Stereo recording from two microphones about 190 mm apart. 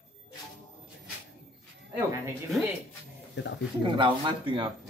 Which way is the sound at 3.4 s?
65° left (ahead or behind).